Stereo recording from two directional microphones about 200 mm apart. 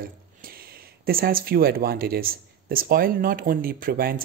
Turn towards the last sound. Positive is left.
turn(degrees=-45)  # may be behind; listen again after turning